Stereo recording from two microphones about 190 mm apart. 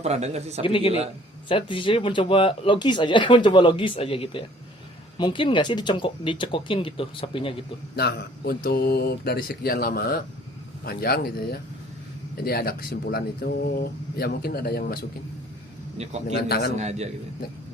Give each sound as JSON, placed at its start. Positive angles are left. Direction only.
{"t": 0.0, "sound": "speech", "side_deg": -35}
{"t": 0.6, "sound": "speech", "side_deg": 30}
{"t": 7.9, "sound": "speech", "side_deg": 55}
{"t": 16.3, "sound": "a man's voice", "side_deg": 55}
{"t": 16.7, "sound": "speech", "side_deg": -35}